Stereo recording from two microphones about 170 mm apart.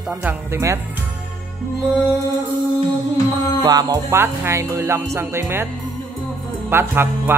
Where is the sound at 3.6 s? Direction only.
25° right (ahead or behind).